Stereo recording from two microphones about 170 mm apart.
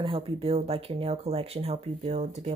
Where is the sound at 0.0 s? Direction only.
35° right (ahead or behind).